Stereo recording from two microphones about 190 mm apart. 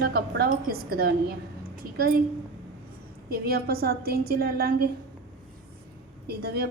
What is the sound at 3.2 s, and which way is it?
A woman's voice, 55° right (ahead or behind).